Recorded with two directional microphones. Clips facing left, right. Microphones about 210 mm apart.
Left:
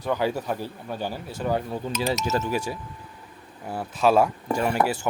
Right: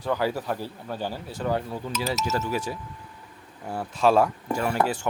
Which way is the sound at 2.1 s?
25° left (ahead or behind).